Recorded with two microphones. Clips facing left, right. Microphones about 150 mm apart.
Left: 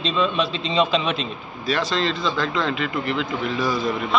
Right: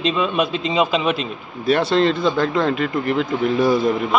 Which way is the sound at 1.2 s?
55° right (ahead or behind).